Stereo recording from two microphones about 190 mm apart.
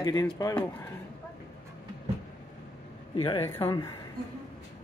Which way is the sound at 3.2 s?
30° left (ahead or behind).